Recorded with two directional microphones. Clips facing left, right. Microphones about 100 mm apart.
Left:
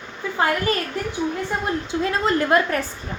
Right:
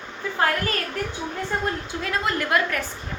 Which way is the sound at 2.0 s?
30° left (ahead or behind).